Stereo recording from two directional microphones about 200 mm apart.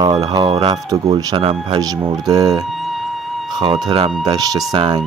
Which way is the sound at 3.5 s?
20° right (ahead or behind).